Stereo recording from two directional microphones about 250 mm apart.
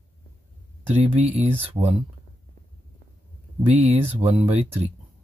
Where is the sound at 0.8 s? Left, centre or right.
Right.